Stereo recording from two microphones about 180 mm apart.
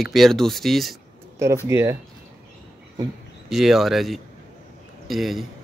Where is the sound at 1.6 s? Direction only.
15° right (ahead or behind).